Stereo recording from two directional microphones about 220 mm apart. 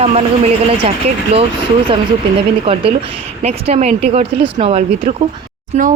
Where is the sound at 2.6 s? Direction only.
25° right (ahead or behind).